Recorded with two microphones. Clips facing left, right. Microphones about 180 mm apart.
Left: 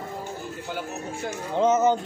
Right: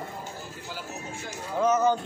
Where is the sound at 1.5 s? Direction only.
25° left (ahead or behind).